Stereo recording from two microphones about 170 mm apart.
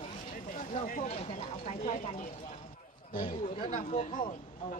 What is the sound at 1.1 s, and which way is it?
Speech, 40° left (ahead or behind).